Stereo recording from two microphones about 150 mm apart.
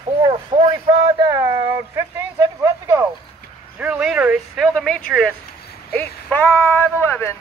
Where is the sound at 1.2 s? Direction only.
25° right (ahead or behind).